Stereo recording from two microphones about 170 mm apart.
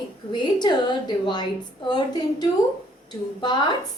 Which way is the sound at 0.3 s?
25° left (ahead or behind).